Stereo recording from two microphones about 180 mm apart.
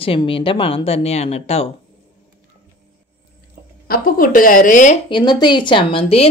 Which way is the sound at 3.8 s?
55° left (ahead or behind).